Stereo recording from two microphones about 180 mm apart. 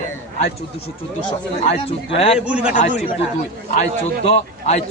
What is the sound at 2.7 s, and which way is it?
Speech, 40° left (ahead or behind).